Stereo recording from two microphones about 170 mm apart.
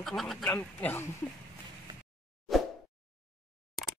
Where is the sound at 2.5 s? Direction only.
Centre (ahead or behind).